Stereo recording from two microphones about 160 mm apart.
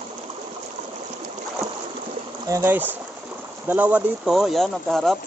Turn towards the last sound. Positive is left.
turn(degrees=0)  # may be behind; listen again after turning